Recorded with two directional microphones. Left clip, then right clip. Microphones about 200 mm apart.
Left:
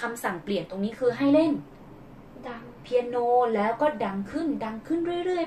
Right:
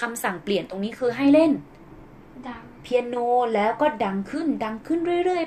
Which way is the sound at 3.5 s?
50° right (ahead or behind).